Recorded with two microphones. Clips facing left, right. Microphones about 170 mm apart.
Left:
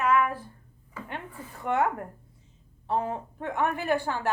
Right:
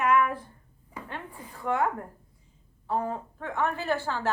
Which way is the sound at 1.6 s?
25° left (ahead or behind).